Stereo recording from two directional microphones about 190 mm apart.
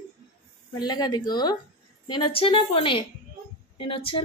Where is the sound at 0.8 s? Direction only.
20° left (ahead or behind).